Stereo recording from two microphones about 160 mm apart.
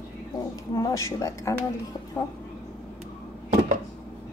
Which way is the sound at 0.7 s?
20° left (ahead or behind).